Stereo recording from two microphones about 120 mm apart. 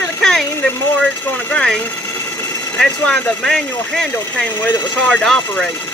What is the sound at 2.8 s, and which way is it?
Speech, 10° left (ahead or behind).